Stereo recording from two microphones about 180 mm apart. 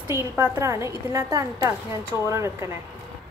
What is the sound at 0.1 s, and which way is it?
A woman's voice, 15° right (ahead or behind).